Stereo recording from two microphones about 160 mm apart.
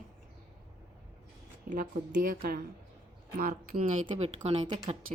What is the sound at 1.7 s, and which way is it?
Speech, 55° right (ahead or behind).